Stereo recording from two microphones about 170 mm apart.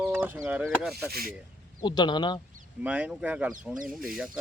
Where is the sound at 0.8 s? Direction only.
Centre (ahead or behind).